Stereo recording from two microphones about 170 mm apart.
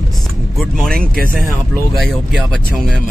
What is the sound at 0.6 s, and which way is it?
Speech, centre (ahead or behind).